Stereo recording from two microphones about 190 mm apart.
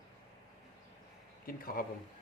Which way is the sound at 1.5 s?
50° left (ahead or behind).